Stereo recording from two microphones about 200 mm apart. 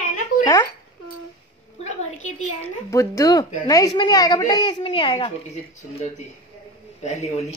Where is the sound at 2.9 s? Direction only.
15° left (ahead or behind).